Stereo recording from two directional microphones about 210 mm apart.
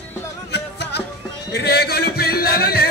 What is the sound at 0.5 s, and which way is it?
Music, 55° left (ahead or behind).